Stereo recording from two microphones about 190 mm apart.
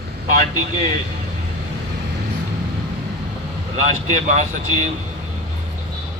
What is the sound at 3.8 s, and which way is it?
Speech, 40° right (ahead or behind).